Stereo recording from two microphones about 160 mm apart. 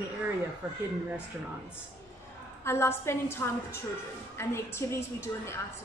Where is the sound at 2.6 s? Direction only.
15° left (ahead or behind).